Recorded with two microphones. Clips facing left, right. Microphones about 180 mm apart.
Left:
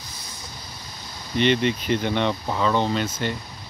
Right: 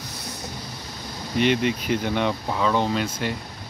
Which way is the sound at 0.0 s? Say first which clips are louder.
Right 6 dB; 70° right (ahead or behind).